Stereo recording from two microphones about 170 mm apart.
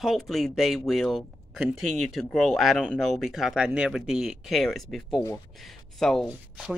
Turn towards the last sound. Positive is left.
turn(degrees=0)  # may be behind; listen again after turning